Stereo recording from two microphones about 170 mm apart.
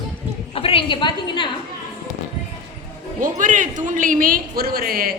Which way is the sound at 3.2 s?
50° right (ahead or behind).